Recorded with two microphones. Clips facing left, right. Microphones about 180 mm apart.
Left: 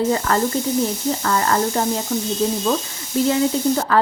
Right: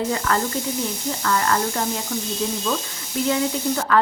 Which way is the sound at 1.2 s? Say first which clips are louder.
Left 1 dB; 35° left (ahead or behind).